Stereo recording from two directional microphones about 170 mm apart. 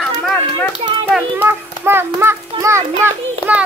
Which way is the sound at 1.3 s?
15° right (ahead or behind).